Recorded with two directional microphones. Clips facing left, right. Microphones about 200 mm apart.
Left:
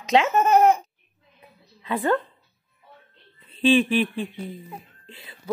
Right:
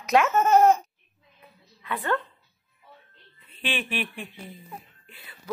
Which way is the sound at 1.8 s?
25° left (ahead or behind).